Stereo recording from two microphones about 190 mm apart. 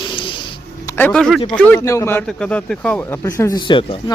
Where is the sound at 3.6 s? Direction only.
25° left (ahead or behind).